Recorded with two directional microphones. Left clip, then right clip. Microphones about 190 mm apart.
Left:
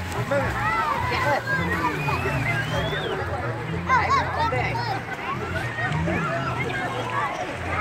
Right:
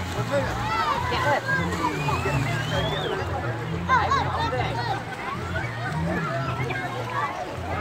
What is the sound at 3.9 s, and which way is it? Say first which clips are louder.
Speech: left 1 dB; 50° left (ahead or behind).